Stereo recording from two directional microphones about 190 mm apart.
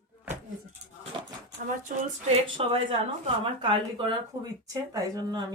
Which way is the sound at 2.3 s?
30° right (ahead or behind).